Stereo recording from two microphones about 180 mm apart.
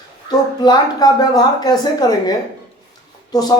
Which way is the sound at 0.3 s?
20° left (ahead or behind).